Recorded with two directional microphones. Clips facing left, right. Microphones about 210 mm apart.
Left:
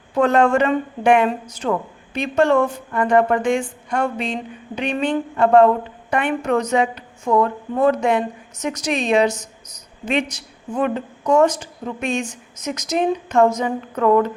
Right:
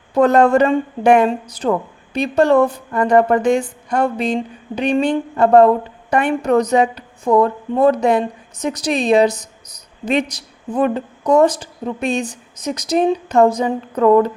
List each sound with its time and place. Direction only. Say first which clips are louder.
0.1 s a woman's voice: right 4 dB; 40° right (ahead or behind)